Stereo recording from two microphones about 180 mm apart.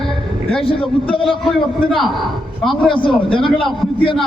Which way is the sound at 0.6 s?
30° left (ahead or behind).